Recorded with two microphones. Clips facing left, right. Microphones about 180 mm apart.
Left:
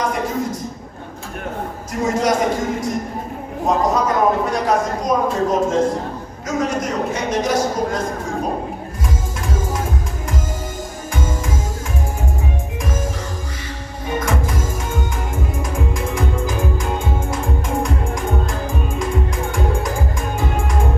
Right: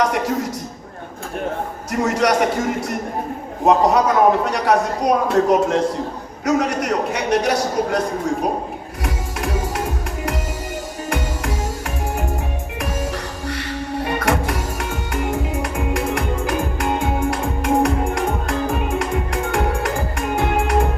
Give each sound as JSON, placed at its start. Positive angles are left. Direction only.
{"t": 0.0, "sound": "a sound", "side_deg": -70}
{"t": 1.9, "sound": "a man's voice", "side_deg": -70}
{"t": 9.4, "sound": "music", "side_deg": -65}
{"t": 14.0, "sound": "music", "side_deg": -70}